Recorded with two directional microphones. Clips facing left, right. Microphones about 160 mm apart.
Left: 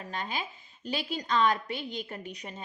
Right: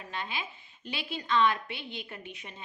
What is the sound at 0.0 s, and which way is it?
A woman's voice, 40° left (ahead or behind).